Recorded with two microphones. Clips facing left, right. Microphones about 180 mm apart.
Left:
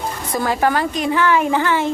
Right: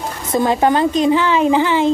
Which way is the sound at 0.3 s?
20° right (ahead or behind).